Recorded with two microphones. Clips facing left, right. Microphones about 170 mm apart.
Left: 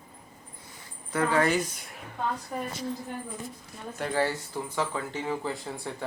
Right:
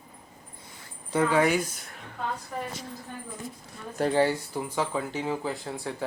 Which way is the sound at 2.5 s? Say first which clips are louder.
Left 1 dB; 15° left (ahead or behind).